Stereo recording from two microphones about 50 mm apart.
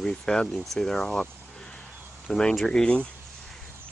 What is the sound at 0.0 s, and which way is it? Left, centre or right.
Speech, centre.